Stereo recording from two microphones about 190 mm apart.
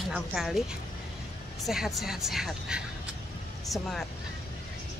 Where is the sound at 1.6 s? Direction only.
Centre (ahead or behind).